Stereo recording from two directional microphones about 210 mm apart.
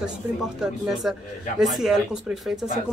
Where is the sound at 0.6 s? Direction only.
Centre (ahead or behind).